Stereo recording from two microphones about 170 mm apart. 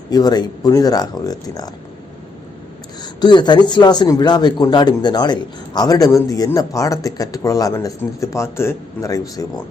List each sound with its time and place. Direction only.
0.1 s a man's voice: 25° left (ahead or behind)
3.0 s a man's voice: 25° left (ahead or behind)